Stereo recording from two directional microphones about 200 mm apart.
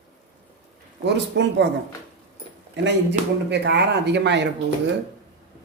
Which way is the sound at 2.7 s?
60° right (ahead or behind).